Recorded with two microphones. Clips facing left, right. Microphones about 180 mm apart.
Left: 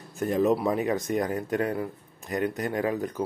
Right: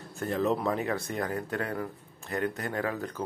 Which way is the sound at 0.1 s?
15° left (ahead or behind).